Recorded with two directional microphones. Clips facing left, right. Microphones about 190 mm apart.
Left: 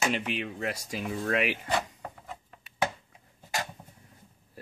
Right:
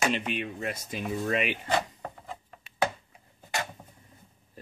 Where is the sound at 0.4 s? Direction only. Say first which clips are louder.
Even; centre (ahead or behind).